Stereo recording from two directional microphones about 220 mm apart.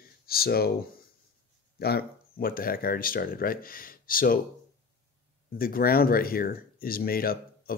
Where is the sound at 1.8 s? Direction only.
45° left (ahead or behind).